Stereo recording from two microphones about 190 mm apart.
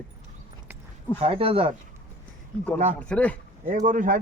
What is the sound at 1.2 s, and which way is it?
Speech, 30° right (ahead or behind).